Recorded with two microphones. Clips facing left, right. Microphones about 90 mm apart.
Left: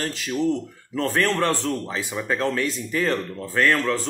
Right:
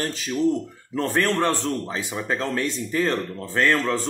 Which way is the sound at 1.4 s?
20° right (ahead or behind).